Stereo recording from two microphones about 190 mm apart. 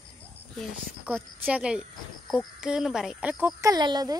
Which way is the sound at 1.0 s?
10° right (ahead or behind).